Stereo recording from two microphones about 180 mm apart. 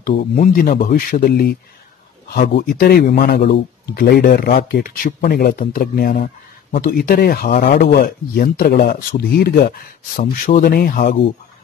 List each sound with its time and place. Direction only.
0.4 s a man's voice: 50° left (ahead or behind)